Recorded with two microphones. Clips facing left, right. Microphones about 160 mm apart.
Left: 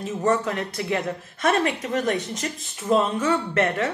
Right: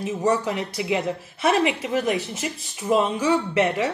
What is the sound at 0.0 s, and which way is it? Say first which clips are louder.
Speech: even; 5° right (ahead or behind).